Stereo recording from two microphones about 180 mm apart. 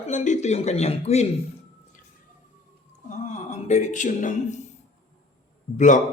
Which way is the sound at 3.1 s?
40° left (ahead or behind).